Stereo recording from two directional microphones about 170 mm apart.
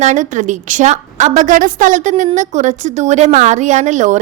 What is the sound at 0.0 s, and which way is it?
A woman's voice, 45° right (ahead or behind).